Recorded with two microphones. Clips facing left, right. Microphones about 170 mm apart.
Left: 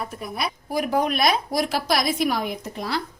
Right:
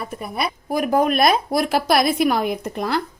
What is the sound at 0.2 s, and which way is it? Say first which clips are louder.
A woman's voice: right 3 dB; 55° right (ahead or behind).